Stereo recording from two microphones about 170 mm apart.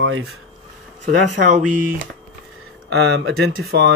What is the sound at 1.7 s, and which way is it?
Speech, 50° right (ahead or behind).